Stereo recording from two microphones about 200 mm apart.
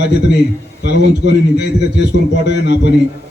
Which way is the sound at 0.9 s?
60° left (ahead or behind).